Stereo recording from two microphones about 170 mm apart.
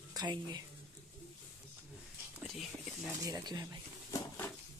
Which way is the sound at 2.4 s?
Centre (ahead or behind).